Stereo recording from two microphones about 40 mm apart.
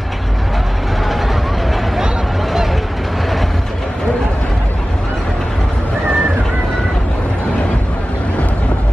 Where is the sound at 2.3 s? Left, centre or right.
Centre.